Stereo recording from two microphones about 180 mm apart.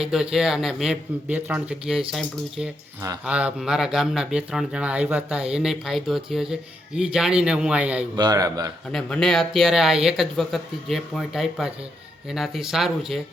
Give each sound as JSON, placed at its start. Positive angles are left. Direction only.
{"t": 0.0, "sound": "speech", "side_deg": -5}
{"t": 8.1, "sound": "a man's voice", "side_deg": -20}
{"t": 8.9, "sound": "speech", "side_deg": 5}